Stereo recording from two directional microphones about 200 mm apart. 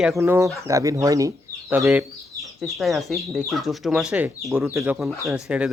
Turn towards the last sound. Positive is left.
turn(degrees=-5)  # may be behind; listen again after turning